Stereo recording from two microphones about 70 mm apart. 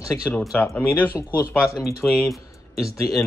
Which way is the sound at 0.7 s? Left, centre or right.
Left.